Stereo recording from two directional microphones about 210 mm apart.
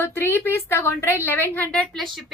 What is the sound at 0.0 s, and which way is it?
A woman's voice, 10° left (ahead or behind).